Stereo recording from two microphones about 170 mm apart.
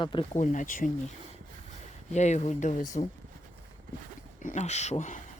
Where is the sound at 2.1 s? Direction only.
45° left (ahead or behind).